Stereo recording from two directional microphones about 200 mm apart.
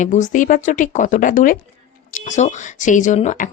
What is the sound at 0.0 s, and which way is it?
Speech, 40° left (ahead or behind).